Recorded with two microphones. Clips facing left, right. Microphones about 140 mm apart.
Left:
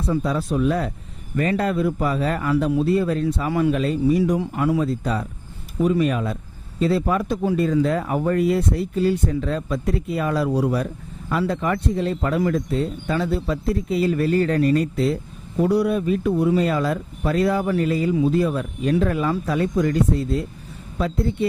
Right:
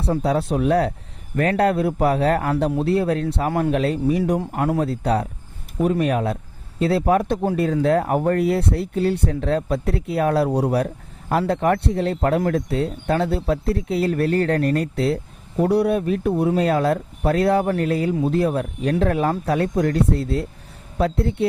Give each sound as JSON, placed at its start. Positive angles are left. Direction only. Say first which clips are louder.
{"t": 0.0, "sound": "a man's voice", "louder": "right 2 dB", "side_deg": -65}